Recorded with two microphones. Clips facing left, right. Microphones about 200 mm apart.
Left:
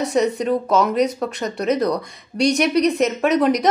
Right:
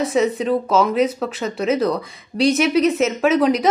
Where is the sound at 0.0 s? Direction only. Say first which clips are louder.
Right 1 dB; centre (ahead or behind).